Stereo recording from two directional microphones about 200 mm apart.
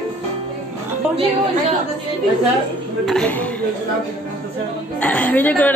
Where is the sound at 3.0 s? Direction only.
5° left (ahead or behind).